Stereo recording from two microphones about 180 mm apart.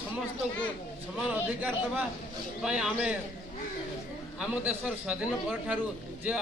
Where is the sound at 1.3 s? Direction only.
10° right (ahead or behind).